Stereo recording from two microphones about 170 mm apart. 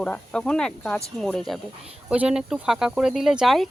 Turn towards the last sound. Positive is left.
turn(degrees=0)  # may be behind; listen again after turning